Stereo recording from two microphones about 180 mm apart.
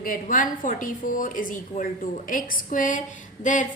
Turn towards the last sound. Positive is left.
turn(degrees=45)  # may be behind; listen again after turning